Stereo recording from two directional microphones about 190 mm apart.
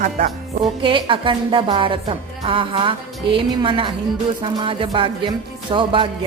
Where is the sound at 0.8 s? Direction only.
25° right (ahead or behind).